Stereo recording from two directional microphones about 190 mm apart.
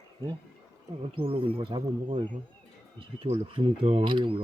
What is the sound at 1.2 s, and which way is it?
Speech, 30° right (ahead or behind).